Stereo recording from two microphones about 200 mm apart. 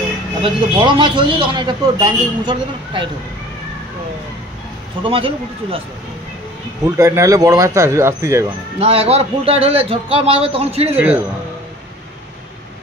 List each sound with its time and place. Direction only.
0.4 s a man's voice: 25° right (ahead or behind)
5.0 s a man's voice: 25° right (ahead or behind)
7.0 s speech: 15° right (ahead or behind)
8.7 s a man's voice: 30° right (ahead or behind)